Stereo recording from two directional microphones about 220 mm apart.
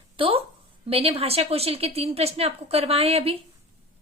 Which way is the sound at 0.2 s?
25° right (ahead or behind).